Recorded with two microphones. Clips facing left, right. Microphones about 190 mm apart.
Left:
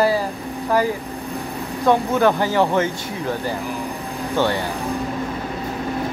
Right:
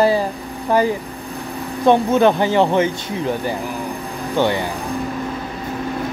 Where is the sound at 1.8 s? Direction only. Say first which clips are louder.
Right 3 dB; 25° right (ahead or behind).